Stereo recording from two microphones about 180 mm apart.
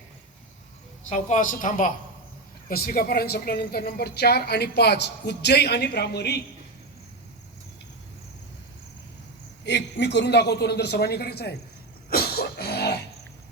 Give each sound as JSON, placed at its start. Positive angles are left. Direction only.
{"t": 1.1, "sound": "a woman's voice", "side_deg": 45}
{"t": 2.6, "sound": "a woman's voice", "side_deg": 55}
{"t": 9.6, "sound": "a man's voice", "side_deg": 75}
{"t": 12.1, "sound": "music", "side_deg": 60}